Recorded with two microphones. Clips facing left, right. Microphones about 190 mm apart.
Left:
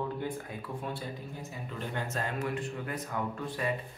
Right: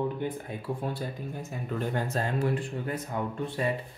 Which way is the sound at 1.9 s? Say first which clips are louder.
Right 3 dB; 35° right (ahead or behind).